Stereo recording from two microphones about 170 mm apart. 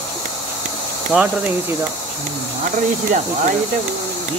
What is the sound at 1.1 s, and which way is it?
Speech, 5° right (ahead or behind).